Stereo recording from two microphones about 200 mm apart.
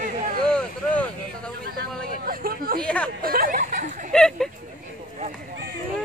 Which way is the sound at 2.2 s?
45° right (ahead or behind).